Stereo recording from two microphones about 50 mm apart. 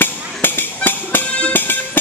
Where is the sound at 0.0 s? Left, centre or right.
Left.